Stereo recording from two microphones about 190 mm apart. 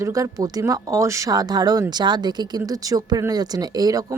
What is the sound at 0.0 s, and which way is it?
Speech, 15° right (ahead or behind).